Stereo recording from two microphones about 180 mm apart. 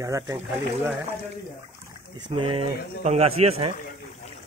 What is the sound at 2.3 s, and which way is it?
A man's voice, 30° right (ahead or behind).